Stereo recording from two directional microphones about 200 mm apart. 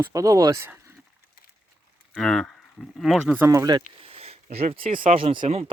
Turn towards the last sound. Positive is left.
turn(degrees=-25)  # may be behind; listen again after turning